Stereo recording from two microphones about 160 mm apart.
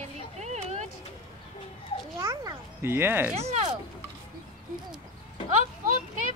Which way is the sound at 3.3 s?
45° right (ahead or behind).